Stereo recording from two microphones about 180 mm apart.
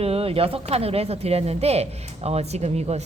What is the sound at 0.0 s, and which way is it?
Speech, 35° right (ahead or behind).